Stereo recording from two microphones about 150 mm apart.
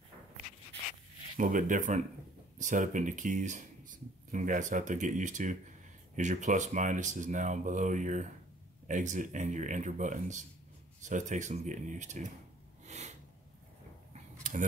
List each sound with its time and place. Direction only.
1.3 s speech: 60° right (ahead or behind)
12.8 s sniff: 50° right (ahead or behind)
14.1 s a sound: 60° right (ahead or behind)